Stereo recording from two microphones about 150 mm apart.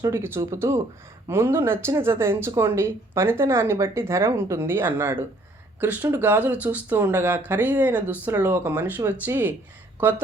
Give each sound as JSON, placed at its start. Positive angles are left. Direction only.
{"t": 0.0, "sound": "speech", "side_deg": -15}